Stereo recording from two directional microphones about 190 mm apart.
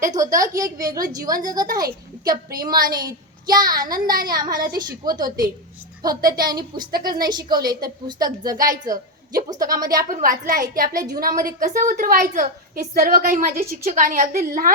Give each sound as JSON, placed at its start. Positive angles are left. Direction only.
{"t": 0.2, "sound": "a woman's voice", "side_deg": -15}
{"t": 10.1, "sound": "a woman's voice", "side_deg": -45}